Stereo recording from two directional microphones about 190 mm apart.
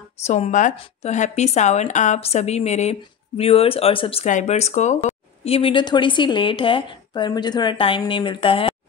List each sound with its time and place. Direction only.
0.2 s a woman's voice: 35° left (ahead or behind)